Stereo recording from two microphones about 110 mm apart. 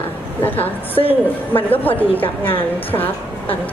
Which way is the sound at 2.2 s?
55° left (ahead or behind).